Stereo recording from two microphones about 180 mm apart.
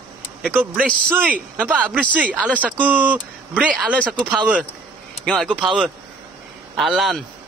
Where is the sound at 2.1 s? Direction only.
10° right (ahead or behind).